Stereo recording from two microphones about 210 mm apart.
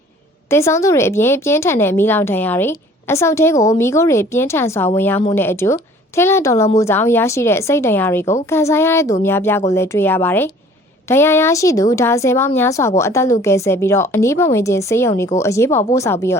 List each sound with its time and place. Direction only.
0.5 s a woman's voice: 15° left (ahead or behind)